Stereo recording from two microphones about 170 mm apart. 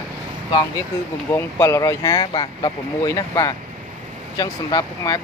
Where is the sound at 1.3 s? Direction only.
20° left (ahead or behind).